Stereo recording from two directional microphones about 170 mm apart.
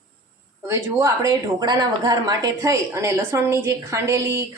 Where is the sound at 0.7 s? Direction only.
15° right (ahead or behind).